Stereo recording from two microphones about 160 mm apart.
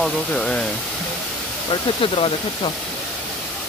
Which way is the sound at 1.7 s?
35° left (ahead or behind).